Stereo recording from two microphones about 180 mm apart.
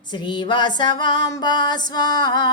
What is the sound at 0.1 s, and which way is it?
Music, 25° left (ahead or behind).